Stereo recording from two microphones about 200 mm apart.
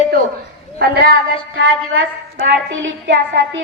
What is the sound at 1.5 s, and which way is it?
Speech, 85° right.